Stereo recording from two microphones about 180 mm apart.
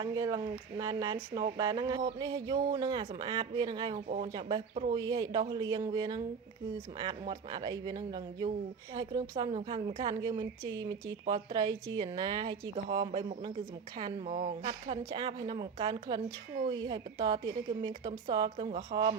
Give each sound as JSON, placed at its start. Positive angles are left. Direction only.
{"t": 0.0, "sound": "a woman's voice", "side_deg": -20}
{"t": 4.9, "sound": "a woman's voice", "side_deg": -20}
{"t": 14.3, "sound": "speech", "side_deg": -40}
{"t": 14.6, "sound": "a woman's voice", "side_deg": -30}